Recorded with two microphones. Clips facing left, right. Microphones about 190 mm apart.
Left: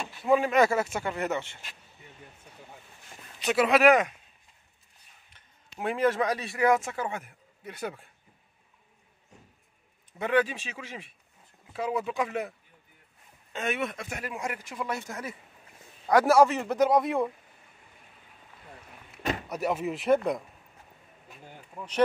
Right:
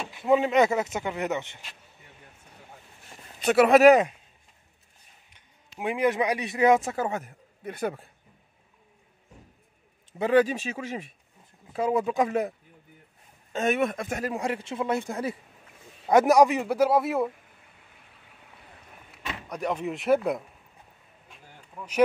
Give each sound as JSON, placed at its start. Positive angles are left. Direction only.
{"t": 0.1, "sound": "speech", "side_deg": -20}
{"t": 3.3, "sound": "speech", "side_deg": -55}
{"t": 3.8, "sound": "a man's voice", "side_deg": -35}
{"t": 5.3, "sound": "a man's voice", "side_deg": -15}
{"t": 6.8, "sound": "speech", "side_deg": -40}
{"t": 10.1, "sound": "a man's voice", "side_deg": -35}
{"t": 19.5, "sound": "speech", "side_deg": 5}